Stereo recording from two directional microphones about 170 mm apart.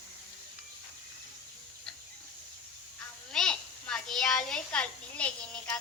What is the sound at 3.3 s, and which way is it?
A child's voice, 5° left (ahead or behind).